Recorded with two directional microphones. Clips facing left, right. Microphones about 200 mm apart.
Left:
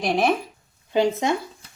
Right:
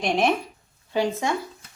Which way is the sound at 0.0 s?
Centre (ahead or behind).